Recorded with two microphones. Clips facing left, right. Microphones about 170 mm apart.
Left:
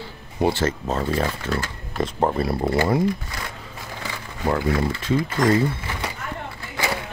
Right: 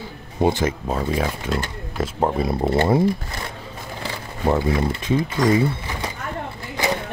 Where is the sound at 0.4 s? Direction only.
15° right (ahead or behind); by 2.3 s centre (ahead or behind).